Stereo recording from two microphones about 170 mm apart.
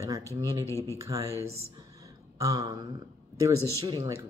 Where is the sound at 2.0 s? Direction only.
20° right (ahead or behind).